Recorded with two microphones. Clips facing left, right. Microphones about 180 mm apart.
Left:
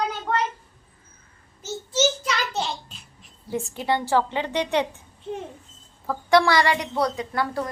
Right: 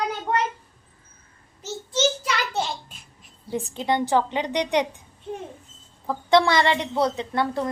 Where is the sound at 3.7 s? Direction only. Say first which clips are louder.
Right 1 dB; 20° right (ahead or behind).